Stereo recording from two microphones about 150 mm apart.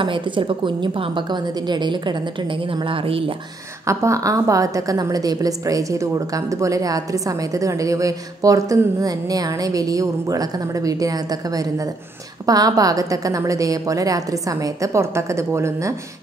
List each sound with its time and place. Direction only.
0.0 s a woman's voice: 35° right (ahead or behind)
3.8 s a woman's voice: 20° right (ahead or behind)